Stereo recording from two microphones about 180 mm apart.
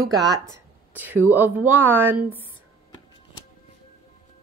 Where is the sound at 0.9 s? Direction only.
10° right (ahead or behind).